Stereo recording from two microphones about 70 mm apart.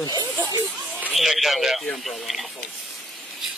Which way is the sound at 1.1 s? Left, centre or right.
Centre.